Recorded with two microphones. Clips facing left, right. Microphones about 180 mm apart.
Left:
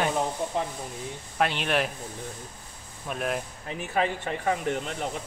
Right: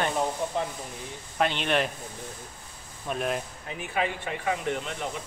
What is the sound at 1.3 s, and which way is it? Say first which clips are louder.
Speech: even; centre (ahead or behind).